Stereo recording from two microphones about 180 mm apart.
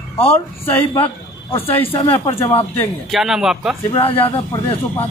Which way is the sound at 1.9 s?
25° left (ahead or behind).